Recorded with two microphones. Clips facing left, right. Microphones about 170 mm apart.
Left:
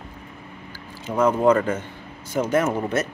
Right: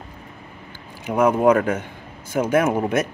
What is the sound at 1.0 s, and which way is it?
Speech, 10° right (ahead or behind).